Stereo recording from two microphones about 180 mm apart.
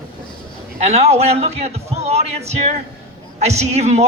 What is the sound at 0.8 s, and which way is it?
Speech, 35° right (ahead or behind).